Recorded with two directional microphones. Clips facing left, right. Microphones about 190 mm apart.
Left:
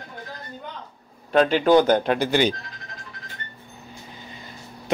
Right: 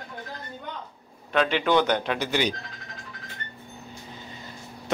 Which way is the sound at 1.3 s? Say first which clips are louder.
Left 6 dB; 40° left (ahead or behind).